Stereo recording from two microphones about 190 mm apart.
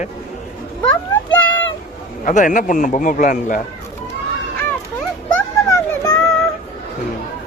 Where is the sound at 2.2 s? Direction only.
45° left (ahead or behind).